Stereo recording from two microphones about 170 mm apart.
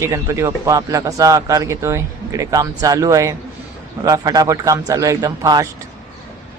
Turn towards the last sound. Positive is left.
turn(degrees=-20)  # may be behind; listen again after turning